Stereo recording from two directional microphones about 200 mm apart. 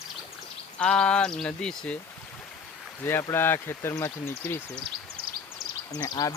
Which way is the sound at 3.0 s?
10° left (ahead or behind).